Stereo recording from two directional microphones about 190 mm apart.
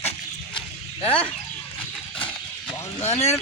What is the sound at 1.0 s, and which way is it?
Speech, 5° left (ahead or behind).